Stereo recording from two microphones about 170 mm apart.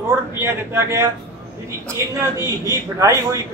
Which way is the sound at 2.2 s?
20° right (ahead or behind).